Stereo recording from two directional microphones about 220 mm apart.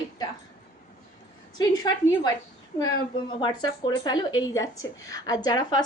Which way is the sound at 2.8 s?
20° left (ahead or behind).